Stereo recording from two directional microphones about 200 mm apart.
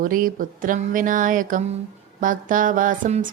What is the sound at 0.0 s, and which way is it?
Speech, 45° right (ahead or behind).